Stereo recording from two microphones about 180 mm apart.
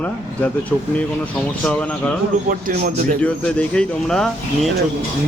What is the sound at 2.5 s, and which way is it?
Speech, 50° right (ahead or behind).